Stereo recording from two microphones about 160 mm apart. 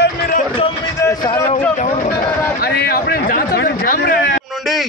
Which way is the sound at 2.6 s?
80° left.